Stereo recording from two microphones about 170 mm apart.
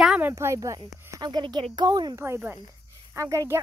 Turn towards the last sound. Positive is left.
turn(degrees=-20)  # may be behind; listen again after turning